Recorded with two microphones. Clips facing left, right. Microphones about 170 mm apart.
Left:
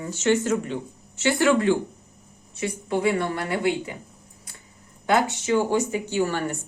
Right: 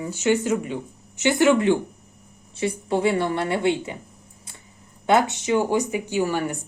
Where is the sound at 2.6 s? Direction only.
30° right (ahead or behind).